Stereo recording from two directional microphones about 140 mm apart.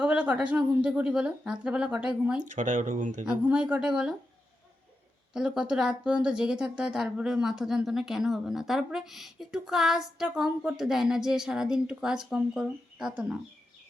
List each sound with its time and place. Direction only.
0.0 s speech: 10° right (ahead or behind)
2.4 s speech: 65° right (ahead or behind)
3.4 s speech: 10° right (ahead or behind)
5.3 s speech: 5° right (ahead or behind)